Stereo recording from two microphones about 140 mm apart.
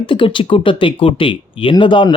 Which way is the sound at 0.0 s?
35° left (ahead or behind).